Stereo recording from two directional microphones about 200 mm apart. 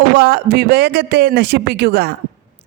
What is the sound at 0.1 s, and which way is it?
A man's voice, 55° right (ahead or behind).